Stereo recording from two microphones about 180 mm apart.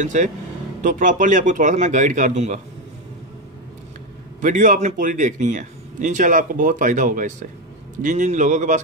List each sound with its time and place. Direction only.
0.0 s a man's voice: 40° right (ahead or behind)
4.4 s a man's voice: 45° right (ahead or behind)